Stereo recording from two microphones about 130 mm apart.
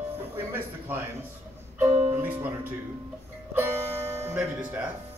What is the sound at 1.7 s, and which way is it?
Music, 15° right (ahead or behind).